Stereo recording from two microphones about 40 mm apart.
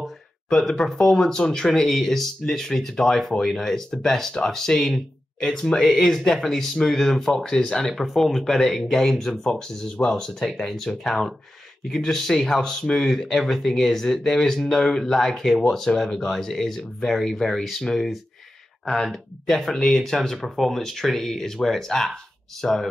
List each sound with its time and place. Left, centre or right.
0.5 s speech: centre
7.9 s speech: centre
8.5 s speech: centre
19.4 s speech: centre